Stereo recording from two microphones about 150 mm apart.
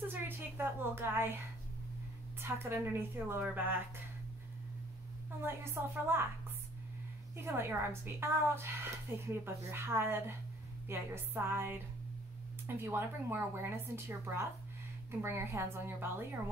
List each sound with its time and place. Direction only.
0.1 s a sound: 15° right (ahead or behind)
2.4 s a woman's voice: 15° right (ahead or behind)
5.4 s a woman's voice: 15° right (ahead or behind)
7.3 s a woman's voice: 15° right (ahead or behind)